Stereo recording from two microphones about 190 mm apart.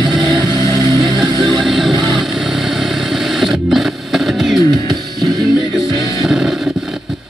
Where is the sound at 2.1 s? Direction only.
Centre (ahead or behind).